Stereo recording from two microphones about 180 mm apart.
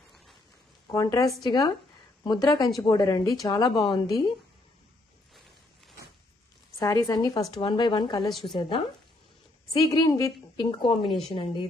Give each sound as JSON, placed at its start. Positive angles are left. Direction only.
{"t": 0.9, "sound": "a woman's voice", "side_deg": 20}
{"t": 5.3, "sound": "a sound", "side_deg": 0}
{"t": 6.8, "sound": "a woman's voice", "side_deg": 20}
{"t": 8.3, "sound": "a woman's voice", "side_deg": 0}
{"t": 8.5, "sound": "a woman's voice", "side_deg": 30}